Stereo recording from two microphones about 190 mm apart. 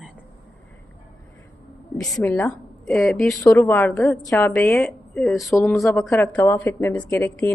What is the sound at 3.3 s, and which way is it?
A woman's voice, 15° left (ahead or behind).